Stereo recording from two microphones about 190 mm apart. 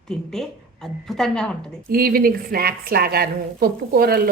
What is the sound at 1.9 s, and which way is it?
A woman's voice, 50° right (ahead or behind).